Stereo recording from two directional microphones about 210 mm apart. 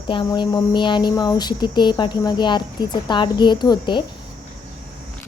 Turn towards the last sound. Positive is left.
turn(degrees=20)  # may be behind; listen again after turning